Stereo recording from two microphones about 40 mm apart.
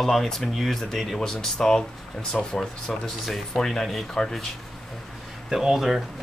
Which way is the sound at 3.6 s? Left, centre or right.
Centre.